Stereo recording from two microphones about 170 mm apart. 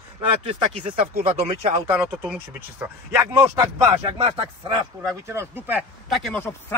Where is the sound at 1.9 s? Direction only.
15° right (ahead or behind).